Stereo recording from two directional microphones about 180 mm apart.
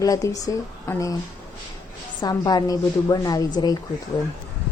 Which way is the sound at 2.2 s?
20° left (ahead or behind).